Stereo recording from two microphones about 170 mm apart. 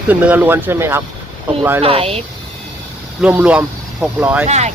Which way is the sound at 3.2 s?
10° right (ahead or behind).